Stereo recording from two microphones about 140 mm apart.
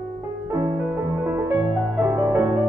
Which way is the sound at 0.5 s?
20° right (ahead or behind).